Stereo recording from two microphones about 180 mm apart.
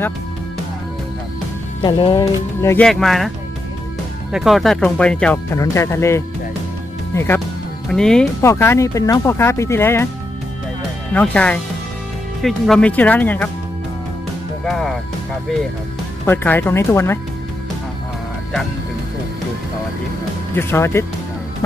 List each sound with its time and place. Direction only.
1.8 s speech: 30° left (ahead or behind)
2.1 s speech: 15° left (ahead or behind)
2.9 s speech: centre (ahead or behind)
4.3 s speech: centre (ahead or behind)
8.4 s speech: 15° left (ahead or behind)
11.1 s speech: 5° left (ahead or behind)
14.6 s speech: centre (ahead or behind)
16.3 s speech: 10° left (ahead or behind)
20.5 s speech: 15° left (ahead or behind)